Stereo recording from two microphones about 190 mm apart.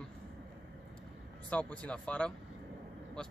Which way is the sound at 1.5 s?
5° left (ahead or behind).